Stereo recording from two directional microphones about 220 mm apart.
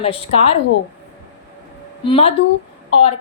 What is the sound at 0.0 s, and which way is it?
Speech, 25° left (ahead or behind).